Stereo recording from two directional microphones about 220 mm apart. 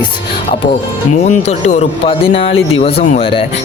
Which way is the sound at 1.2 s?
30° left (ahead or behind).